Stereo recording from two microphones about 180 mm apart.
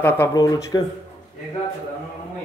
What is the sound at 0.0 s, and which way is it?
Speech, 15° left (ahead or behind).